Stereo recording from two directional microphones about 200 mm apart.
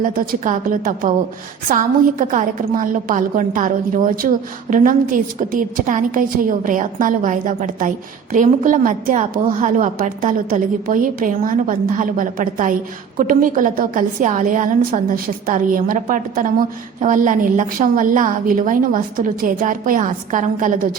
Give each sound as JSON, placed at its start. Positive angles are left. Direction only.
{"t": 0.0, "sound": "a woman's voice", "side_deg": -45}